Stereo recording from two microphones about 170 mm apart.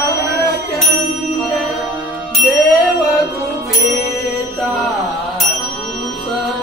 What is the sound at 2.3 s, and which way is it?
Bicycle bell, centre (ahead or behind).